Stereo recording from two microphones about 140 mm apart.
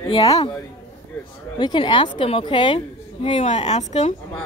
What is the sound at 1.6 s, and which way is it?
A woman's voice, 35° left (ahead or behind).